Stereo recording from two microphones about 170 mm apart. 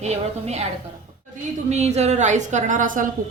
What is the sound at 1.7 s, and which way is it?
A woman's voice, 40° right (ahead or behind).